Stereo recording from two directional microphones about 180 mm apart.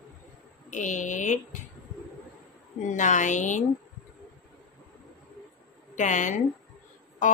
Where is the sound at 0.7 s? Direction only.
45° left (ahead or behind).